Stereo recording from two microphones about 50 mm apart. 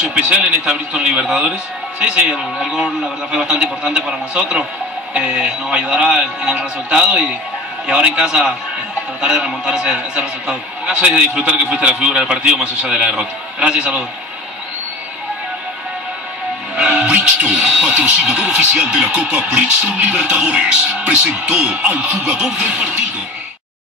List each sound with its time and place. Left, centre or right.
0.0 s speech: right
9.4 s speech: centre
16.7 s speech: right